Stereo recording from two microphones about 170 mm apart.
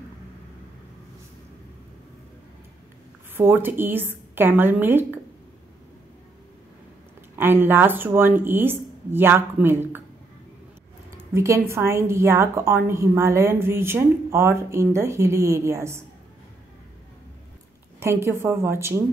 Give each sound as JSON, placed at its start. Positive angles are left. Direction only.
{"t": 3.3, "sound": "a woman's voice", "side_deg": -10}
{"t": 7.3, "sound": "a woman's voice", "side_deg": -10}
{"t": 11.1, "sound": "a woman's voice", "side_deg": -15}
{"t": 18.0, "sound": "a woman's voice", "side_deg": -15}